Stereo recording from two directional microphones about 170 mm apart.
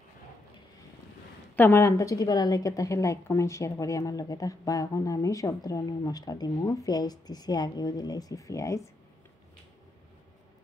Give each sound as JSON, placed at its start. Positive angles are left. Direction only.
{"t": 1.6, "sound": "a woman's voice", "side_deg": 15}